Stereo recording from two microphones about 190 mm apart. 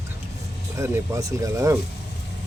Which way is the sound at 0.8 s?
15° right (ahead or behind).